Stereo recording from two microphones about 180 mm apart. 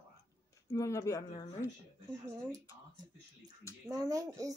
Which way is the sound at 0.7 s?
15° left (ahead or behind).